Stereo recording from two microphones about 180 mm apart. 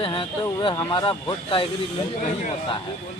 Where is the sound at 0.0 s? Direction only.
30° left (ahead or behind).